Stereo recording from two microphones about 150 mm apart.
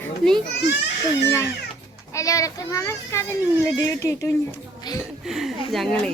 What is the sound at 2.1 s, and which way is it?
A child's voice, 20° left (ahead or behind).